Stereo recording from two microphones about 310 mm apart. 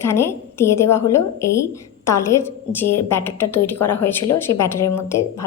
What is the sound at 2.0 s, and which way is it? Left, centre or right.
Speech, centre.